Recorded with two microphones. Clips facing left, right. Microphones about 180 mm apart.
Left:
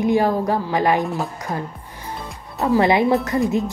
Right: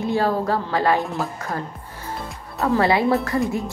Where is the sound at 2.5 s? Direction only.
20° left (ahead or behind).